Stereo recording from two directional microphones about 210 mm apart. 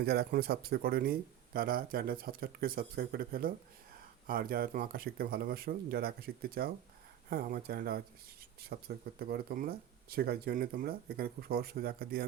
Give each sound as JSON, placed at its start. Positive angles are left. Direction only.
{"t": 0.0, "sound": "speech", "side_deg": -50}